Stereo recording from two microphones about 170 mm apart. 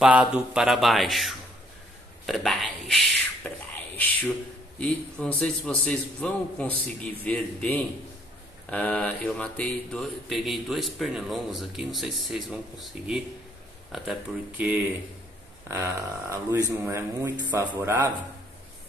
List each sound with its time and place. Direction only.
0.0 s speech: 5° right (ahead or behind)
3.4 s a sound: 10° left (ahead or behind)
4.7 s a man's voice: 5° left (ahead or behind)
15.7 s speech: 15° right (ahead or behind)